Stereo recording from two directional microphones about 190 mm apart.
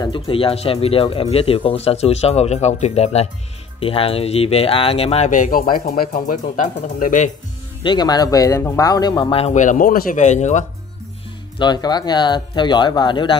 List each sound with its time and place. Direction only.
0.0 s speech: 25° left (ahead or behind); by 7.2 s 45° left (ahead or behind)
7.8 s speech: 25° left (ahead or behind); by 10.6 s 40° left (ahead or behind)
11.5 s speech: 25° left (ahead or behind)